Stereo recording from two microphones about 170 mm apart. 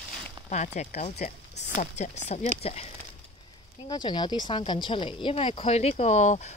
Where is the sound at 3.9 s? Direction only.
25° left (ahead or behind).